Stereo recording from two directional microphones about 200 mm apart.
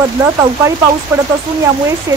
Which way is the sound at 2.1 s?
15° right (ahead or behind).